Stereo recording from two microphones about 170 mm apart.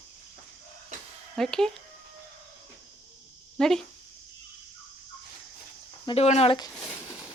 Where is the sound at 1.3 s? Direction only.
5° left (ahead or behind).